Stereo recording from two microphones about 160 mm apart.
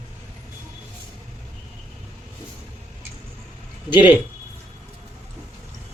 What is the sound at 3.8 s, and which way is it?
Speech, 30° left (ahead or behind).